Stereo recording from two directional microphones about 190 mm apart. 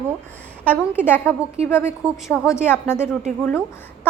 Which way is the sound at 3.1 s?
Centre (ahead or behind).